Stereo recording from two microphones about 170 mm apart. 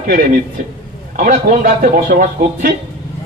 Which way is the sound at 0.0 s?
55° right (ahead or behind).